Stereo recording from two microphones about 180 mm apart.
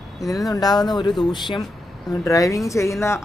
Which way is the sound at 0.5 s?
20° left (ahead or behind).